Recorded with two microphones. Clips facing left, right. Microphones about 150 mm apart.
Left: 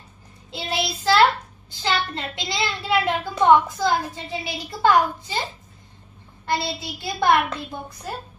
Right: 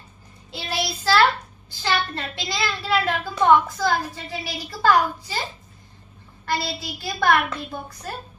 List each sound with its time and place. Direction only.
0.5 s child singing: 20° left (ahead or behind)
1.8 s a child's voice: 20° left (ahead or behind)
6.4 s a child's voice: 20° left (ahead or behind)